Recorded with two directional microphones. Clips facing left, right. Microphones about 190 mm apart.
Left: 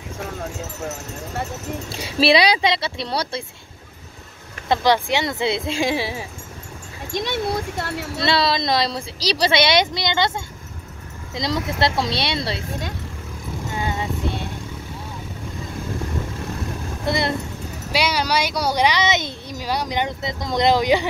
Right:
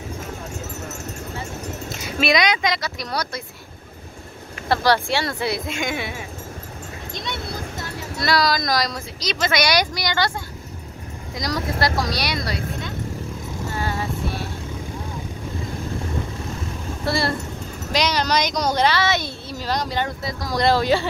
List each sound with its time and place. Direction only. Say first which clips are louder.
1.9 s speech: left 4 dB; 30° left (ahead or behind)
4.6 s speech: left 1 dB; 20° left (ahead or behind)
7.7 s speech: left 4 dB; 65° left (ahead or behind)
8.2 s speech: even; 25° left (ahead or behind)
13.7 s music: left 1 dB; 20° left (ahead or behind)
17.0 s speech: even; 20° left (ahead or behind)
17.9 s speech: even; 10° left (ahead or behind)